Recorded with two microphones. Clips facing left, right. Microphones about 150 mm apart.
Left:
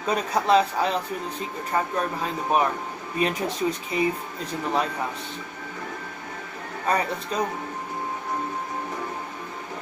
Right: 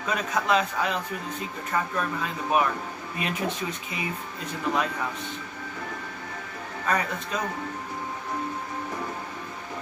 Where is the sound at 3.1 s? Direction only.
35° left (ahead or behind).